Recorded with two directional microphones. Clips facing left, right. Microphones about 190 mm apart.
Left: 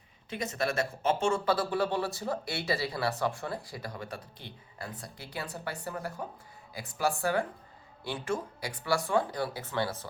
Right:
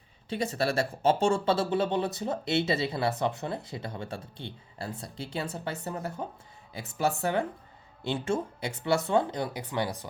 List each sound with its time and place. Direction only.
0.3 s speech: 30° right (ahead or behind); by 10.1 s 15° right (ahead or behind)